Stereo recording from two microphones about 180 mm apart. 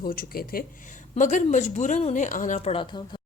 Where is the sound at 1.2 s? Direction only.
45° left (ahead or behind).